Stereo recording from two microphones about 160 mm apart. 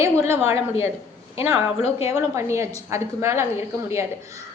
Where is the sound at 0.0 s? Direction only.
15° right (ahead or behind).